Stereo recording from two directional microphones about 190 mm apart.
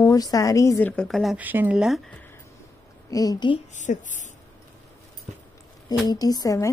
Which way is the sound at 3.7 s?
40° left (ahead or behind).